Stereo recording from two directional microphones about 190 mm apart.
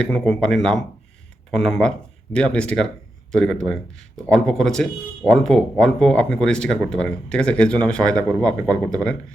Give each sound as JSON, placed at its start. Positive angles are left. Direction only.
{"t": 0.0, "sound": "speech", "side_deg": 5}
{"t": 8.6, "sound": "speech", "side_deg": -20}